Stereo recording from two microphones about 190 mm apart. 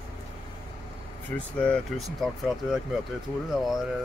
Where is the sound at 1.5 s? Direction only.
5° left (ahead or behind).